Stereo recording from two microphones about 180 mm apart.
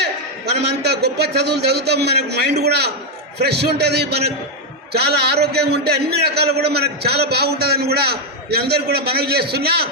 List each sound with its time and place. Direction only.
0.6 s a man's voice: 65° right (ahead or behind)